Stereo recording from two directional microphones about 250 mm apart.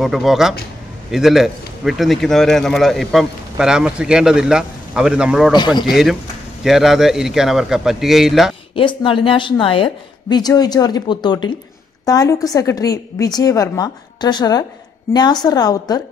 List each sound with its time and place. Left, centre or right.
0.0 s a man's voice: centre
5.5 s a woman's voice: centre
5.9 s a man's voice: centre
8.7 s a woman's voice: centre